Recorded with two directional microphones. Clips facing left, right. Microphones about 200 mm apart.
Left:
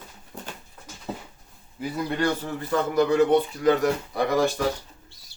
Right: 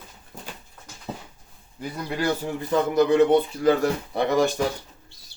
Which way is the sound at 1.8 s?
Centre (ahead or behind).